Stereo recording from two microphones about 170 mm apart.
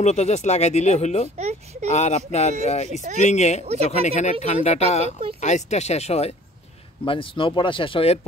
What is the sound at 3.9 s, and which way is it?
A man's voice, 40° left (ahead or behind).